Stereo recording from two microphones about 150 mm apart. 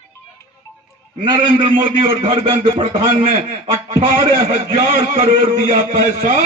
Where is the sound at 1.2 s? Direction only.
35° right (ahead or behind).